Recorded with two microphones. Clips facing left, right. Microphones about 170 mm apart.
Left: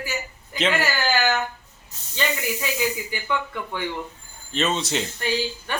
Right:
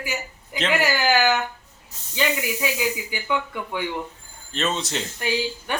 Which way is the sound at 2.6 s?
10° right (ahead or behind).